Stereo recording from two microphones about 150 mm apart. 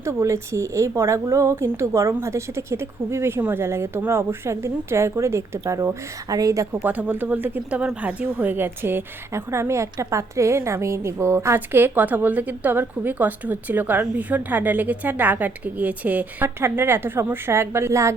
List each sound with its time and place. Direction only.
0.0 s speech: 20° right (ahead or behind)
6.8 s speech: 10° right (ahead or behind)